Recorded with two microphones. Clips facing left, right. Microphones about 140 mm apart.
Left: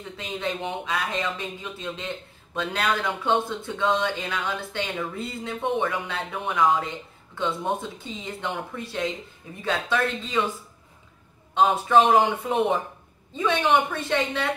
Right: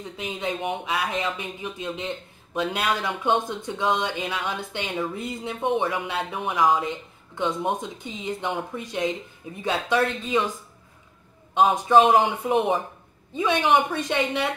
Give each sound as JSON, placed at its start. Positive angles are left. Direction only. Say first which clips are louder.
{"t": 0.2, "sound": "speech", "louder": "right 1 dB", "side_deg": -15}
{"t": 11.5, "sound": "speech", "louder": "right 1 dB", "side_deg": -15}